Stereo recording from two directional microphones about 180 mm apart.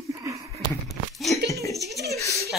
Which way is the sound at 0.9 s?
Centre (ahead or behind).